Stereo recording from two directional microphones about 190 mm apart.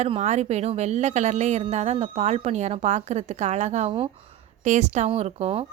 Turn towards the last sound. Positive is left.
turn(degrees=-30)  # may be behind; listen again after turning